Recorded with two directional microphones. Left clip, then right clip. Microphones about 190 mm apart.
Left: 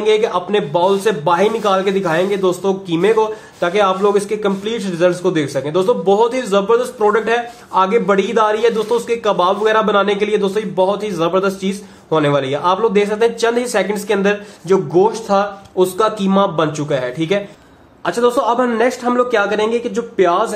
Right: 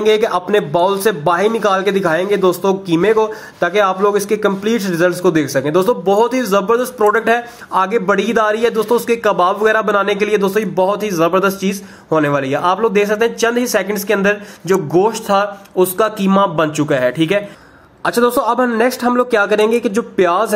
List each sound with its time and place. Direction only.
0.0 s a man's voice: 30° right (ahead or behind)